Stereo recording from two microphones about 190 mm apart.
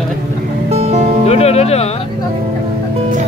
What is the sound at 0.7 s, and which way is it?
Music, 35° right (ahead or behind).